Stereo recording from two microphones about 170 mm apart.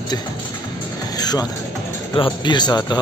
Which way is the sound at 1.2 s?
20° left (ahead or behind).